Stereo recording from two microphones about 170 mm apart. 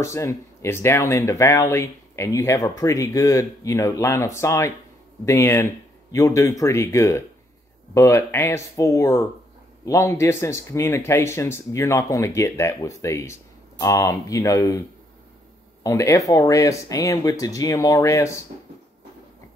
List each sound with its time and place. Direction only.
0.0 s speech: 15° left (ahead or behind)
15.8 s speech: 20° left (ahead or behind)